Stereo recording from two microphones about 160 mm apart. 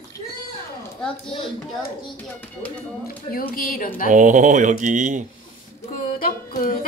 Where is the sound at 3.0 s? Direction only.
65° left (ahead or behind).